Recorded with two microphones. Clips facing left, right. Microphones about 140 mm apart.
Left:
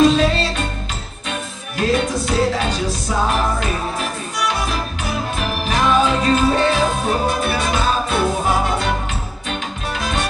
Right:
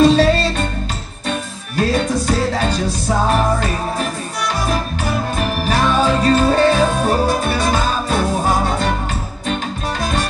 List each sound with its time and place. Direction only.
0.0 s music: 40° right (ahead or behind)
1.8 s music: 40° right (ahead or behind)
5.4 s music: 40° right (ahead or behind)